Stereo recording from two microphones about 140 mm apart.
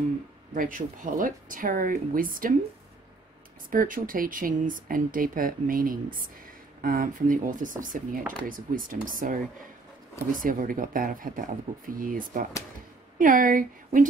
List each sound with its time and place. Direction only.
0.6 s speech: 75° right (ahead or behind)
3.7 s speech: 75° right (ahead or behind)
10.4 s speech: 80° right